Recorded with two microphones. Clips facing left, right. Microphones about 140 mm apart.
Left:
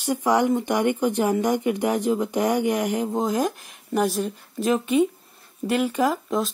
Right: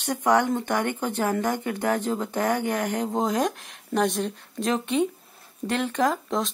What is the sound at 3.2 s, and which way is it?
A woman's voice, centre (ahead or behind).